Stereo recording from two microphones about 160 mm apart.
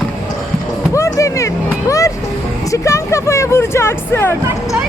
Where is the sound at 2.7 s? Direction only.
20° left (ahead or behind).